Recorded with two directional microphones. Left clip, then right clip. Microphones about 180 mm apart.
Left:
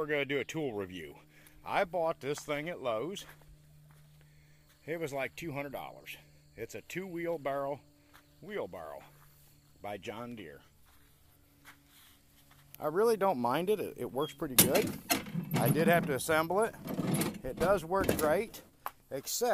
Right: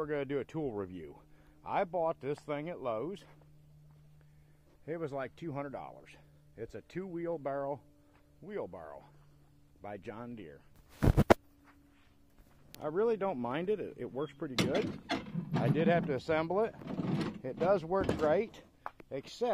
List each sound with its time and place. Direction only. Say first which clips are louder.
0.0 s speech: left 3 dB; 5° left (ahead or behind)
4.8 s speech: left 2 dB; 5° left (ahead or behind)
12.8 s speech: left 3 dB; 10° left (ahead or behind)
13.2 s speech: left 5 dB; 20° left (ahead or behind); by 16.7 s centre (ahead or behind)
16.8 s speech: left 3 dB; 15° left (ahead or behind)
17.4 s speech: even; 10° right (ahead or behind)